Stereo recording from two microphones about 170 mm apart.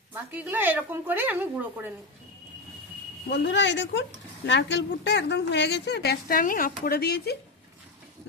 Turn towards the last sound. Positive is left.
turn(degrees=70)  # may be behind; listen again after turning